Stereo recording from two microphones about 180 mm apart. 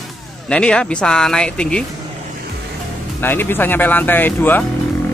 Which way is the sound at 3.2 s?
10° left (ahead or behind).